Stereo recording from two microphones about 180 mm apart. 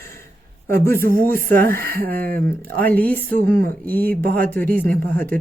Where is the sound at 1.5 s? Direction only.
10° left (ahead or behind).